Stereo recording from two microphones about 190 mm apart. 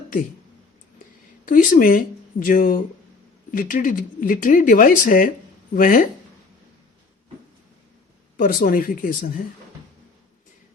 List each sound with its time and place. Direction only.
1.5 s speech: 45° left (ahead or behind)
8.4 s speech: 50° left (ahead or behind)